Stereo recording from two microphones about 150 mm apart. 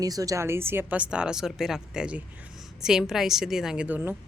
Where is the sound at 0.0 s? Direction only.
25° right (ahead or behind).